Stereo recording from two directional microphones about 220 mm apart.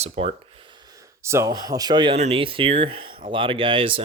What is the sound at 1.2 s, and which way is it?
Speech, 10° right (ahead or behind).